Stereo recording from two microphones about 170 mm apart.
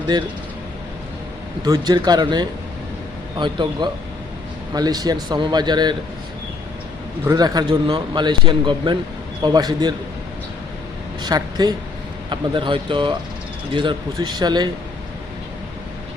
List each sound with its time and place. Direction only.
0.1 s speech: 25° right (ahead or behind)
1.6 s speech: 20° right (ahead or behind)
7.3 s speech: 25° right (ahead or behind)
11.2 s speech: 25° right (ahead or behind)